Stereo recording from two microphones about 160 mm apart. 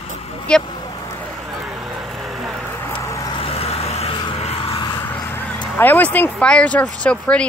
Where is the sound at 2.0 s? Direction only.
Centre (ahead or behind).